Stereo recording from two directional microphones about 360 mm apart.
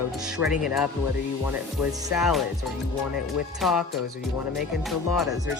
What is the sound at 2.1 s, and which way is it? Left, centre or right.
Speech, centre.